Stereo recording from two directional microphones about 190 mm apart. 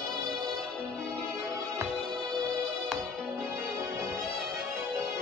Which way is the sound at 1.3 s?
15° right (ahead or behind).